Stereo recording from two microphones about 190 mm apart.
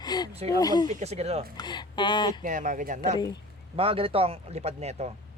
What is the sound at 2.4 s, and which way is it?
Speech, 40° right (ahead or behind).